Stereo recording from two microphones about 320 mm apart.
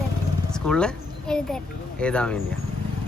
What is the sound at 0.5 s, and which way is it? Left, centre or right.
Speech, centre.